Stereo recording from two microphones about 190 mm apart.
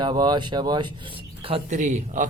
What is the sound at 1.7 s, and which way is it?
Speech, 40° right (ahead or behind).